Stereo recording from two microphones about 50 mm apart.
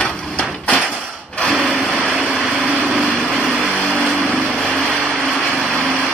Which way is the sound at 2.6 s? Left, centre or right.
Right.